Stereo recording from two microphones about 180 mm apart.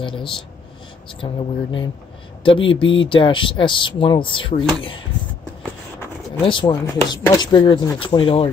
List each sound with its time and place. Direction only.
0.0 s speech: 30° left (ahead or behind)
6.4 s speech: 25° left (ahead or behind)